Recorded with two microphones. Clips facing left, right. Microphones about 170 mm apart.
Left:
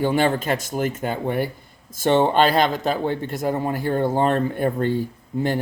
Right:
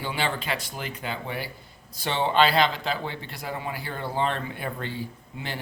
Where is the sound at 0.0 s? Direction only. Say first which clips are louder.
Left 10 dB; 45° left (ahead or behind).